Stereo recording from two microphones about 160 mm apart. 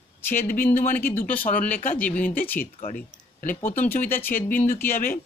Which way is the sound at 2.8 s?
50° left (ahead or behind).